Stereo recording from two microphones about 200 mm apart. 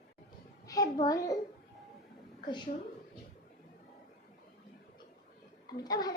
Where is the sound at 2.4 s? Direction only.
20° left (ahead or behind).